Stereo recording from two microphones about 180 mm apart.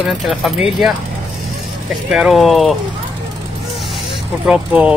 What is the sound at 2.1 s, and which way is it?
Speech, centre (ahead or behind).